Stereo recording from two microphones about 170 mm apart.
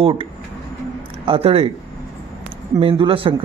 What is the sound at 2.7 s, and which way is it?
Speech, 30° right (ahead or behind).